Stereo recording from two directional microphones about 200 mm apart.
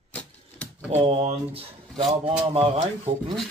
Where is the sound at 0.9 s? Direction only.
30° right (ahead or behind).